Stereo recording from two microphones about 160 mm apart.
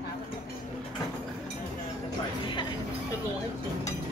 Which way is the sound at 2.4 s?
30° left (ahead or behind).